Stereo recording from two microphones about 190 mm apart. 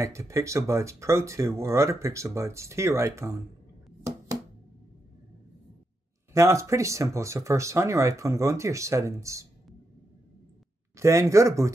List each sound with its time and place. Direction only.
0.0 s speech: 15° right (ahead or behind)
6.3 s speech: 15° right (ahead or behind)
11.0 s speech: 15° right (ahead or behind)